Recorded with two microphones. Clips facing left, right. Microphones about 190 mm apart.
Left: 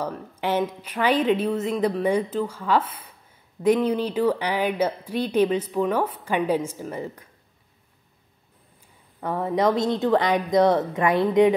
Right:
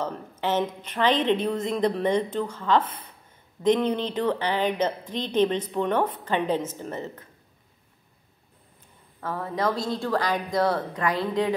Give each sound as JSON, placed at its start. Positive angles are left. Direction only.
{"t": 0.0, "sound": "a woman's voice", "side_deg": 10}
{"t": 9.2, "sound": "a woman's voice", "side_deg": 20}